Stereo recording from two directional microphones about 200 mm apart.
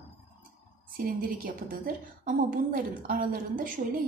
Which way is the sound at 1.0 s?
45° right (ahead or behind).